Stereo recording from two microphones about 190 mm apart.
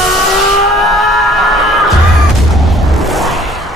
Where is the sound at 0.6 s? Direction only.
Centre (ahead or behind).